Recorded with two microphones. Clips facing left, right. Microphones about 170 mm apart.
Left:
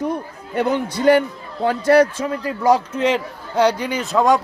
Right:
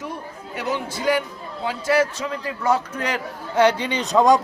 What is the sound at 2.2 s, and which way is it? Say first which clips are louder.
Speech: left 5 dB; 35° left (ahead or behind).